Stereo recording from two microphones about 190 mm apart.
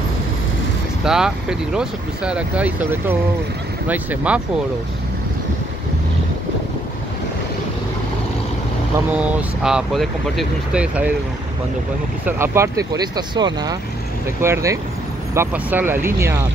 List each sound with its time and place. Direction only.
1.0 s speech: 5° right (ahead or behind)
9.1 s speech: 5° right (ahead or behind)
12.3 s speech: 10° right (ahead or behind)